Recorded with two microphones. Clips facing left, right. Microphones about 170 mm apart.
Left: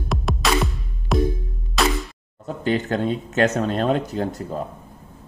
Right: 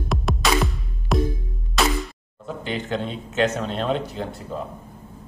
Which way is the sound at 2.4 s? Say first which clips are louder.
Left 6 dB; 45° left (ahead or behind).